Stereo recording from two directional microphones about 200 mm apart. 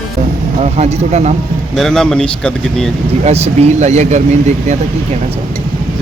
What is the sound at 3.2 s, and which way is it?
Speech, 35° right (ahead or behind).